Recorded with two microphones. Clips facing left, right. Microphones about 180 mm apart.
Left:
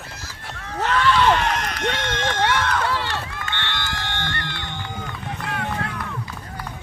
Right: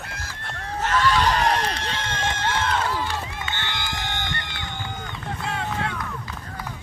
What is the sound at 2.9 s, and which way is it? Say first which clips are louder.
Run: left 1 dB; 80° left.